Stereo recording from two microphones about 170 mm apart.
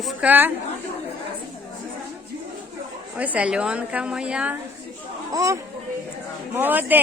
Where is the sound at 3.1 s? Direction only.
10° right (ahead or behind).